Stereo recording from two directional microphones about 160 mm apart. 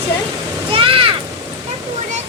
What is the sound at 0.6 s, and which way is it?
Speech, 35° right (ahead or behind).